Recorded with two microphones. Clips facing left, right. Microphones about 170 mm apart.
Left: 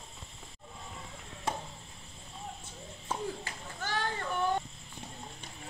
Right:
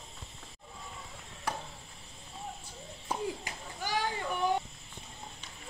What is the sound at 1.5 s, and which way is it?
Chop, 25° left (ahead or behind).